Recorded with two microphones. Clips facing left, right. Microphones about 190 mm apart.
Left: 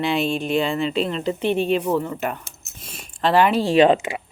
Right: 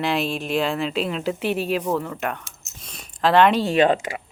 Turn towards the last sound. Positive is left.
turn(degrees=25)  # may be behind; listen again after turning